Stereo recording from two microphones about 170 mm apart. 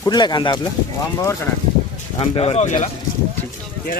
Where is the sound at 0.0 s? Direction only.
25° left (ahead or behind).